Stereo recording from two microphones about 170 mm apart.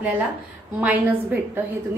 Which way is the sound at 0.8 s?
10° right (ahead or behind).